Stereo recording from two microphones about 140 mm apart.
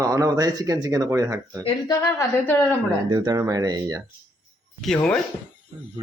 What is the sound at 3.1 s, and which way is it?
Speech, 30° right (ahead or behind).